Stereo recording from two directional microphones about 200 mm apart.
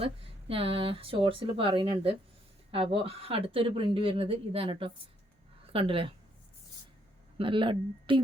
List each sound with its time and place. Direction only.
0.0 s speech: 30° right (ahead or behind)
7.3 s speech: 25° right (ahead or behind)